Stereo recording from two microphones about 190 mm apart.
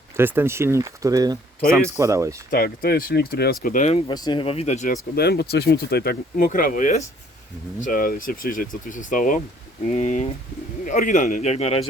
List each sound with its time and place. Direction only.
0.2 s speech: 10° right (ahead or behind)
2.5 s speech: 55° left (ahead or behind); by 4.0 s 35° left (ahead or behind)
4.1 s a man's voice: 20° left (ahead or behind); by 4.9 s 40° left (ahead or behind)
5.1 s a man's voice: 55° left (ahead or behind); by 11.9 s 30° left (ahead or behind)